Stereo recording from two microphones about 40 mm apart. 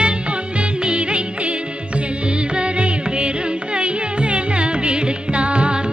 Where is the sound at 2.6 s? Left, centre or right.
Right.